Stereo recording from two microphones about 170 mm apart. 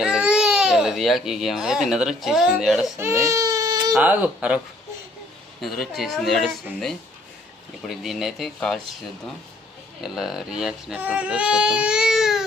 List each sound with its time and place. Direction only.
0.0 s speech: 5° right (ahead or behind)
3.0 s baby cry: 15° right (ahead or behind)
3.9 s speech: 10° right (ahead or behind)
5.8 s speech: centre (ahead or behind)
7.9 s speech: centre (ahead or behind)
10.0 s speech: centre (ahead or behind)